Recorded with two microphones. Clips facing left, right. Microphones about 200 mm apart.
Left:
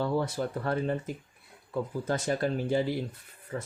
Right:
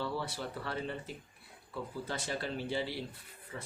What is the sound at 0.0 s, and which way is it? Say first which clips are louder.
Speech: left 8 dB; 45° left (ahead or behind).